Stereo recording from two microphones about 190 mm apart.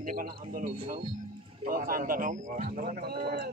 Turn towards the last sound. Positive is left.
turn(degrees=-60)  # may be behind; listen again after turning